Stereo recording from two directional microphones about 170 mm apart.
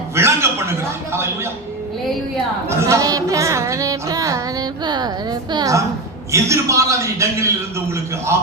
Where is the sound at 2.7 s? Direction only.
15° right (ahead or behind).